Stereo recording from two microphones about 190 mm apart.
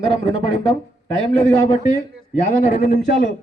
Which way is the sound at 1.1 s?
35° left (ahead or behind).